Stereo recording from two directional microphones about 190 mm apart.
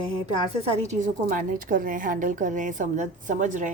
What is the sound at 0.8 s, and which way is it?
A woman's voice, 40° right (ahead or behind).